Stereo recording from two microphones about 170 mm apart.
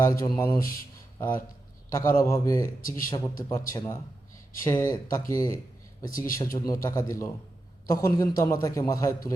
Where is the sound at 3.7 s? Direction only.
20° left (ahead or behind).